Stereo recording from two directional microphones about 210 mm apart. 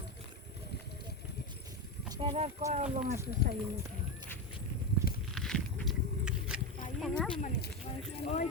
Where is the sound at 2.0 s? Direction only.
20° right (ahead or behind).